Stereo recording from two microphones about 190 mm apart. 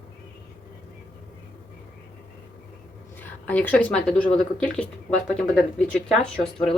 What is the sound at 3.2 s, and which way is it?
Speech, 10° left (ahead or behind).